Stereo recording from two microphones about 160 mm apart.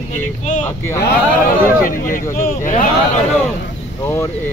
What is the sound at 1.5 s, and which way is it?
Speech, 60° left (ahead or behind).